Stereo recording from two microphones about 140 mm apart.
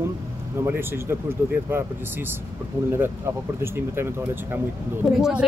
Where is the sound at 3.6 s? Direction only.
15° right (ahead or behind).